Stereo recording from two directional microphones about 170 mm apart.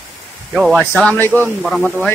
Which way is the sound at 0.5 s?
Centre (ahead or behind).